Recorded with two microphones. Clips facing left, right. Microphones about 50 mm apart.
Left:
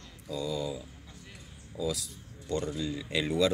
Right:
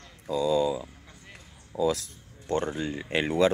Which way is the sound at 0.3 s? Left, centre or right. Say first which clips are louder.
Right 9 dB; right.